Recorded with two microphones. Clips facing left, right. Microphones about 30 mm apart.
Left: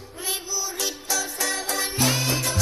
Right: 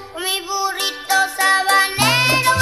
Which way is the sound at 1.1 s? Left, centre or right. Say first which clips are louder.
Right 14 dB; right.